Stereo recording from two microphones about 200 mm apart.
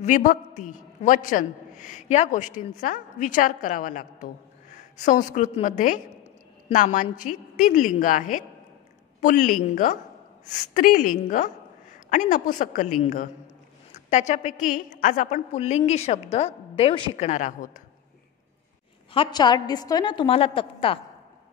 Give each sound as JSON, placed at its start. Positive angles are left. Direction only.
{"t": 0.0, "sound": "a man's voice", "side_deg": 40}
{"t": 17.3, "sound": "a man's voice", "side_deg": 40}
{"t": 19.1, "sound": "a woman's voice", "side_deg": 20}